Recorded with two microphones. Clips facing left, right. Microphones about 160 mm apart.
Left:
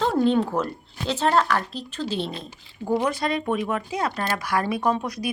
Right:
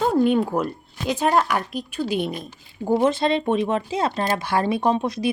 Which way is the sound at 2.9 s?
25° right (ahead or behind).